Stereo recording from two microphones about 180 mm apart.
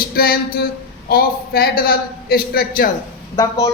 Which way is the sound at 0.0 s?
55° left (ahead or behind).